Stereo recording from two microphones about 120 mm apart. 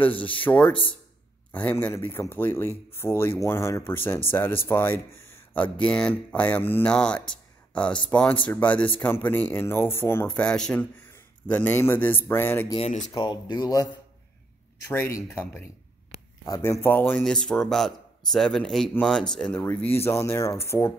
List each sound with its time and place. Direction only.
0.0 s speech: 15° left (ahead or behind)
10.2 s a man's voice: 10° left (ahead or behind)
12.7 s speech: 60° left (ahead or behind)
13.1 s speech: 40° left (ahead or behind)
14.9 s speech: 20° left (ahead or behind)
17.2 s speech: 5° left (ahead or behind)
19.6 s speech: 20° left (ahead or behind)